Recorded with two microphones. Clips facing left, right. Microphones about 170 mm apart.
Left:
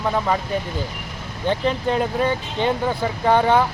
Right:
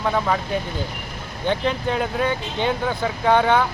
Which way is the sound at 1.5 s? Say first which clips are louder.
Left 1 dB; centre (ahead or behind).